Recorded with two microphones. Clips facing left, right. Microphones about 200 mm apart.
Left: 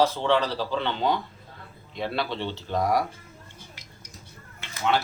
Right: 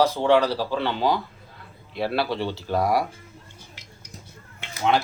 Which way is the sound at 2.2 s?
10° right (ahead or behind).